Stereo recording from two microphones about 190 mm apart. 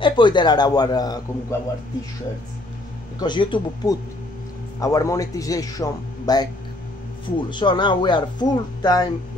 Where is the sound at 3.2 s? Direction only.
25° left (ahead or behind).